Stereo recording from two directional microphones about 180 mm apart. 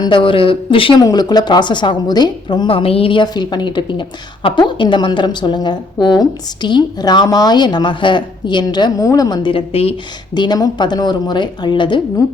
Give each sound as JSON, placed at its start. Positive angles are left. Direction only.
{"t": 0.0, "sound": "speech", "side_deg": 25}